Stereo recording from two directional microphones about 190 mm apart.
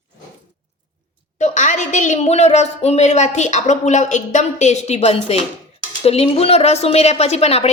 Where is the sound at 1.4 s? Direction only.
40° left (ahead or behind).